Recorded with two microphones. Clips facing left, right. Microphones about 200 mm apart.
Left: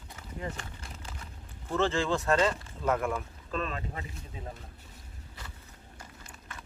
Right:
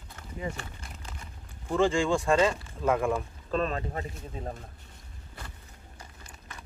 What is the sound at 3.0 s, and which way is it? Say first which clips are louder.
Speech: right 4 dB; 30° right (ahead or behind).